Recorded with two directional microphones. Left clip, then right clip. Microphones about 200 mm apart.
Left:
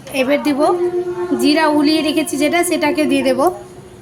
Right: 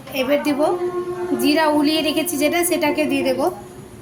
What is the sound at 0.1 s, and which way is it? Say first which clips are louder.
A woman's voice: left 3 dB; 20° left (ahead or behind).